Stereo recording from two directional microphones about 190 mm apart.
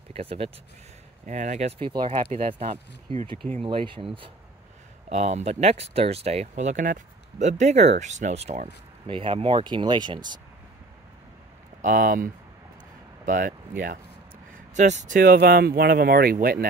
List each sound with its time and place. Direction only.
0.1 s speech: 30° right (ahead or behind)
11.8 s speech: 45° right (ahead or behind)